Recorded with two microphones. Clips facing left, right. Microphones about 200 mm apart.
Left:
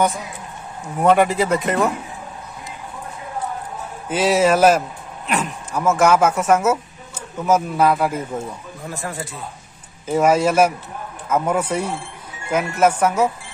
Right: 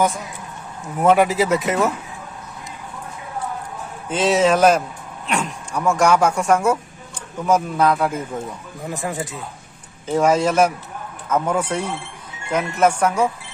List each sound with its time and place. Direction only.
1.0 s speech: centre (ahead or behind)
4.1 s speech: 10° left (ahead or behind)
8.8 s speech: 15° right (ahead or behind)
10.0 s a man's voice: 5° left (ahead or behind)